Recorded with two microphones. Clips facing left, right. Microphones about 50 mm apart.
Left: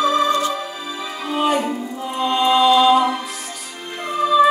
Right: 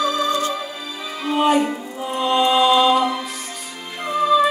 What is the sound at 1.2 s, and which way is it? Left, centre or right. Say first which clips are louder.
Music: right 2 dB; centre.